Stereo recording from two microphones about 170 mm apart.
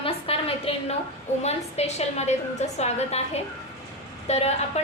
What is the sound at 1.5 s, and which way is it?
A woman's voice, 40° left (ahead or behind).